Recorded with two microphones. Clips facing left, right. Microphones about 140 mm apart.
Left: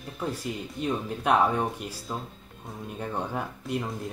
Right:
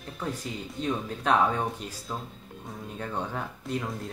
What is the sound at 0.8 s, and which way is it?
Speech, 10° left (ahead or behind).